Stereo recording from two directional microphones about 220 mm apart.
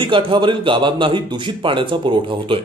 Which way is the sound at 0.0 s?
20° right (ahead or behind).